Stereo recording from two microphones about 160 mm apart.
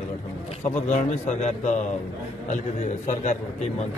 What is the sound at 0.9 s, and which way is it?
Speech, 45° left (ahead or behind).